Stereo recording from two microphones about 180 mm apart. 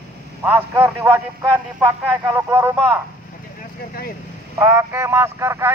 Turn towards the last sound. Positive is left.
turn(degrees=-15)  # may be behind; listen again after turning